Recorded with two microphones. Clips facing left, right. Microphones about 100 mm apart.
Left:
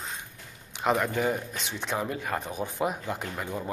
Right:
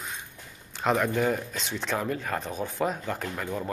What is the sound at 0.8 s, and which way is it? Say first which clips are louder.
Speech: right 1 dB; 5° left (ahead or behind).